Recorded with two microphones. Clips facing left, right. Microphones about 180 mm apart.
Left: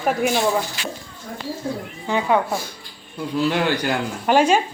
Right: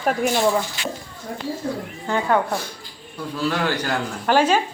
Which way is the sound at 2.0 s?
10° left (ahead or behind).